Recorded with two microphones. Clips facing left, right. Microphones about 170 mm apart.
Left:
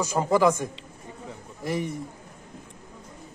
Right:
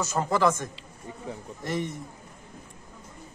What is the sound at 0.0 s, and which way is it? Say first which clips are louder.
A man's voice: left 3 dB; 10° left (ahead or behind).